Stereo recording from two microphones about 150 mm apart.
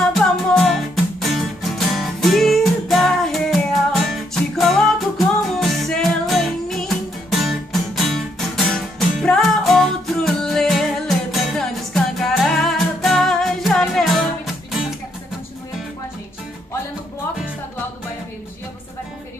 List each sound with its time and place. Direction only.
0.0 s music: centre (ahead or behind)